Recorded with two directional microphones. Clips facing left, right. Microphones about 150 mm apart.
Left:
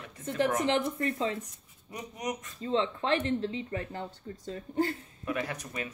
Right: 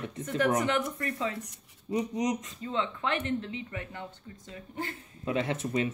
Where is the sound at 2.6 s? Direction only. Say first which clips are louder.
Left 3 dB; 30° left (ahead or behind).